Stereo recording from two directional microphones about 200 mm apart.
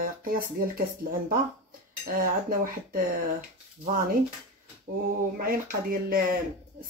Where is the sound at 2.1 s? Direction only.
45° right (ahead or behind).